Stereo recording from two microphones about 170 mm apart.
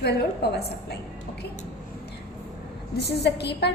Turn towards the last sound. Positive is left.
turn(degrees=75)  # may be behind; listen again after turning